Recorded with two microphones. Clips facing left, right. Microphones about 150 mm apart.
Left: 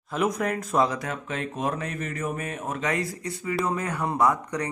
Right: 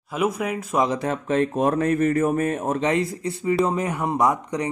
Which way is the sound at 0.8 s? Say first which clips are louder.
Right 6 dB; 30° right (ahead or behind).